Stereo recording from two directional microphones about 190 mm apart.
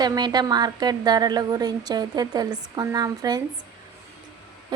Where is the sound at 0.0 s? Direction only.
20° right (ahead or behind).